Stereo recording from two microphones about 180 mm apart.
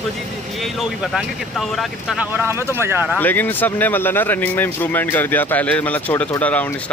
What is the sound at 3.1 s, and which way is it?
Speech, 10° left (ahead or behind).